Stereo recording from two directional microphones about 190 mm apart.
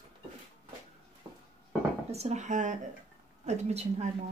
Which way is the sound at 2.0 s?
35° right (ahead or behind).